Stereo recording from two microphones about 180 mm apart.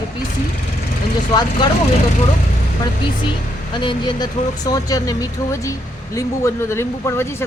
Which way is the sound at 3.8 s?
25° left (ahead or behind).